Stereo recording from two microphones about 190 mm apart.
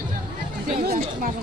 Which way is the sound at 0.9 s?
55° right (ahead or behind).